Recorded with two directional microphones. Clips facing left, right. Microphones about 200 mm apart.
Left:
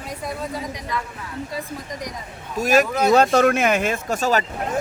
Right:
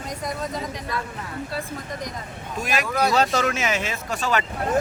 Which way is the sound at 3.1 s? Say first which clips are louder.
Left 6 dB; 55° left (ahead or behind).